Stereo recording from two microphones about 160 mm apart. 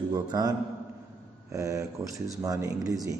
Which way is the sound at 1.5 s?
20° right (ahead or behind).